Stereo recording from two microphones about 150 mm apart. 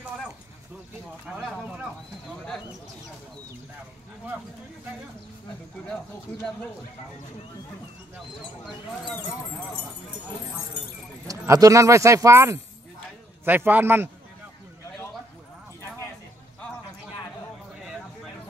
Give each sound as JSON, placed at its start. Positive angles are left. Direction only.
{"t": 1.2, "sound": "speech", "side_deg": -10}
{"t": 8.4, "sound": "speech", "side_deg": 0}
{"t": 9.1, "sound": "speech", "side_deg": 10}
{"t": 11.2, "sound": "speech", "side_deg": -20}